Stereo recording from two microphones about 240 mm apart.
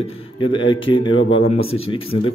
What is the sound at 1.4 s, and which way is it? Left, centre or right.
Speech, left.